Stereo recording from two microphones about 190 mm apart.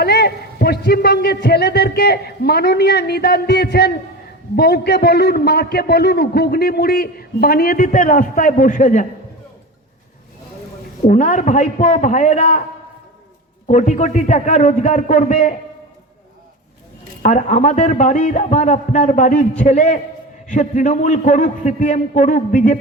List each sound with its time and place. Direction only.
0.0 s a man's voice: 55° left (ahead or behind); by 9.0 s 40° left (ahead or behind)
11.0 s a man's voice: 40° left (ahead or behind)
13.7 s a man's voice: 40° left (ahead or behind)
17.2 s a man's voice: 40° left (ahead or behind)